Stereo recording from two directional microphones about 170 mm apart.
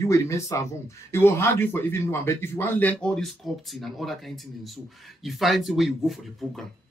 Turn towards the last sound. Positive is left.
turn(degrees=0)  # may be behind; listen again after turning